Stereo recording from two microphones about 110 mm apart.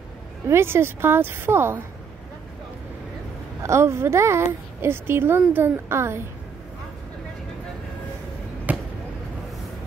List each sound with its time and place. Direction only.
0.5 s a woman's voice: 20° right (ahead or behind)
3.6 s a woman's voice: 25° right (ahead or behind)
8.7 s basketball bounce: 15° right (ahead or behind)